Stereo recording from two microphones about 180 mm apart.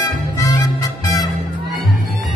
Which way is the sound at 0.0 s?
20° left (ahead or behind).